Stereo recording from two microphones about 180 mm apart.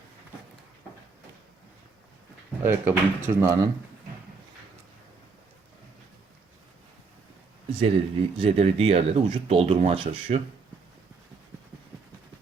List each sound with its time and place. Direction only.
2.6 s speech: 15° right (ahead or behind)
7.7 s speech: 35° right (ahead or behind)